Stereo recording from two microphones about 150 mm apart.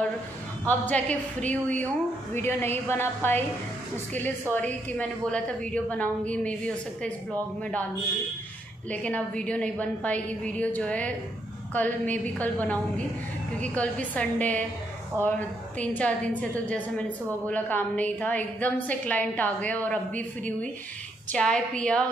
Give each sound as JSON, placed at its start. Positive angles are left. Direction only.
{"t": 0.7, "sound": "a woman's voice", "side_deg": 10}
{"t": 8.9, "sound": "a woman's voice", "side_deg": 10}
{"t": 15.2, "sound": "speech", "side_deg": -20}
{"t": 15.8, "sound": "a woman's voice", "side_deg": 10}